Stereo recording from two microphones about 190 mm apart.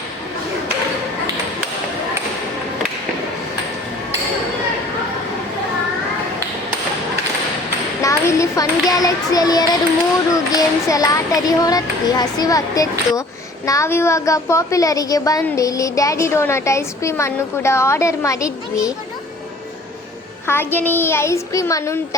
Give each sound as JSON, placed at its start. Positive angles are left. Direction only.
{"t": 8.0, "sound": "a child's voice", "side_deg": 20}
{"t": 20.5, "sound": "a woman's voice", "side_deg": 10}